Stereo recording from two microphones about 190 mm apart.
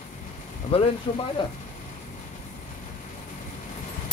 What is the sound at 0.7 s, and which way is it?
Speech, 30° left (ahead or behind).